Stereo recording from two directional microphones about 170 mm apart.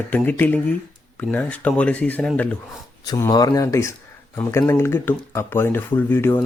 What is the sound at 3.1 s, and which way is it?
Speech, 20° left (ahead or behind).